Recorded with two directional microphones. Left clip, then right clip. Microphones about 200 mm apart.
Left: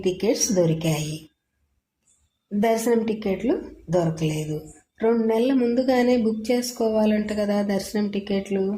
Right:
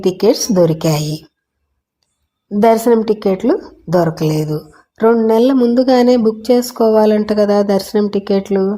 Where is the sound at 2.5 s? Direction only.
30° right (ahead or behind).